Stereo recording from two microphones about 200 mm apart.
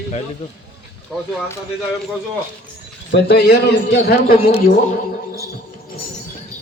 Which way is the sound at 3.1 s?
55° left (ahead or behind).